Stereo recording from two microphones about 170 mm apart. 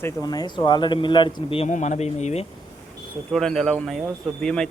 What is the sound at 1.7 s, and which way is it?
Speech, 45° left (ahead or behind).